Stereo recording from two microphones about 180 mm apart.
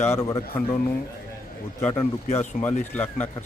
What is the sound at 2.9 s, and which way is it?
Speech, 10° left (ahead or behind).